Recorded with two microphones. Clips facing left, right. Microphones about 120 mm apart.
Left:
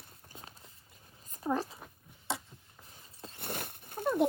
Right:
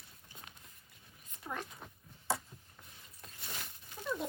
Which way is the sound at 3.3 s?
55° left (ahead or behind).